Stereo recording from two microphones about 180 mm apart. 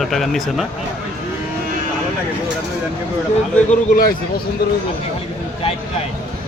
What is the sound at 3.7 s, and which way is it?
Speech, 55° left (ahead or behind).